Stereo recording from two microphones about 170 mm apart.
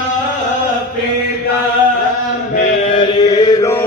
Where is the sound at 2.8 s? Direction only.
30° left (ahead or behind).